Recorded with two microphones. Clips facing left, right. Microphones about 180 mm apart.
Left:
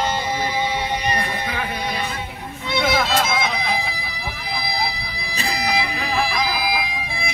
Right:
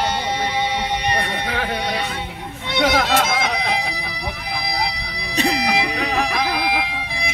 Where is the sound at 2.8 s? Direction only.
70° right (ahead or behind).